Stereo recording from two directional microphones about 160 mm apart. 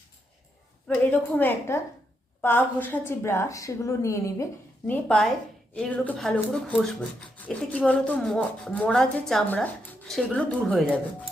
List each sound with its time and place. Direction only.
0.9 s a woman's voice: 10° left (ahead or behind)
4.9 s a woman's voice: 5° left (ahead or behind)